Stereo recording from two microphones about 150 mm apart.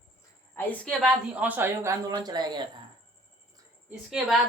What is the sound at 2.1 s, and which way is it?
Speech, 25° right (ahead or behind).